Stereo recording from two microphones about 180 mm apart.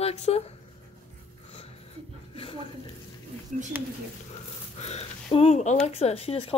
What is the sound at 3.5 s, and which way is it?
Speech, 45° right (ahead or behind).